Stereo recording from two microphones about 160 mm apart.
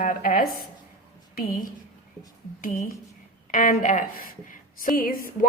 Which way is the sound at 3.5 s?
55° left (ahead or behind).